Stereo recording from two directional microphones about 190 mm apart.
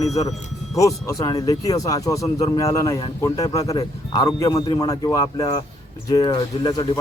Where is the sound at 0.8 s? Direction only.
15° left (ahead or behind).